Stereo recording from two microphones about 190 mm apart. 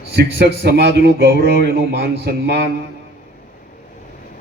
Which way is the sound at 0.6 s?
60° right (ahead or behind).